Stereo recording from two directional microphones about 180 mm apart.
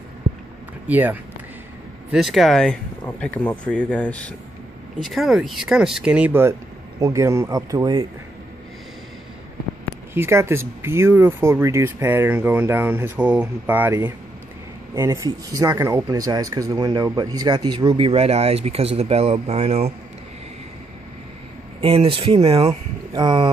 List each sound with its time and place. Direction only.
0.8 s speech: 10° right (ahead or behind)
10.1 s speech: 15° right (ahead or behind); by 19.9 s 35° right (ahead or behind)
21.8 s speech: 30° right (ahead or behind)